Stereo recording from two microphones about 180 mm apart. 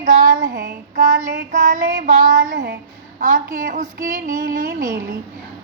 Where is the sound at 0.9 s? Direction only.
45° right (ahead or behind).